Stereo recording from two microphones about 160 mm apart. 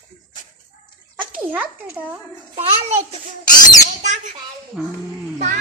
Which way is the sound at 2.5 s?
40° right (ahead or behind).